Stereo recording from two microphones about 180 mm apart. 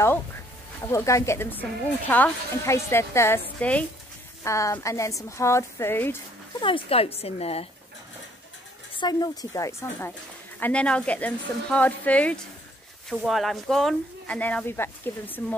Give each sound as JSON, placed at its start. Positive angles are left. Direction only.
{"t": 0.8, "sound": "speech", "side_deg": 15}
{"t": 6.6, "sound": "a woman's voice", "side_deg": 30}
{"t": 8.9, "sound": "speech", "side_deg": 25}